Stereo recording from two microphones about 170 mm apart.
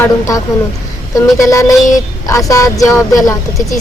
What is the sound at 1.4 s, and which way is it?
A woman's voice, 20° left (ahead or behind).